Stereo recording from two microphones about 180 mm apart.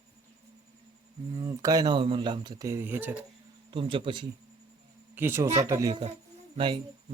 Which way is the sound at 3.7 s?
30° right (ahead or behind).